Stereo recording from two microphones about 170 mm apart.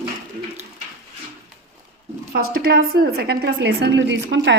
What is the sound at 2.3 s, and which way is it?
A woman's voice, 60° right (ahead or behind).